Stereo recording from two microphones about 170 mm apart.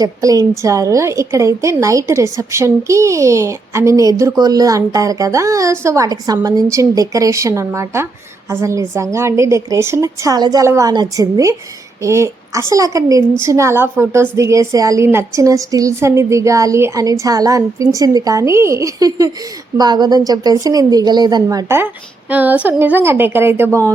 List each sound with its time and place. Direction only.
0.0 s a woman's voice: 20° right (ahead or behind)